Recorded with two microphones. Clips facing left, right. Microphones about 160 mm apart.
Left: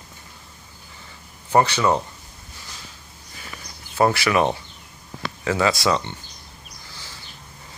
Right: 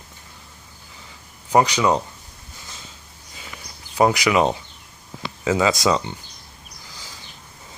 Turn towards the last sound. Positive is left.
turn(degrees=-15)  # may be behind; listen again after turning